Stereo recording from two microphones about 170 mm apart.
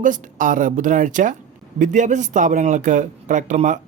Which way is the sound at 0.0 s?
50° right (ahead or behind).